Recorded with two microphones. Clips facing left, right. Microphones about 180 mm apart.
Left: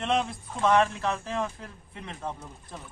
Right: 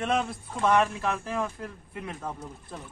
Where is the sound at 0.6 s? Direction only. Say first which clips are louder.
Left 1 dB; 10° right (ahead or behind).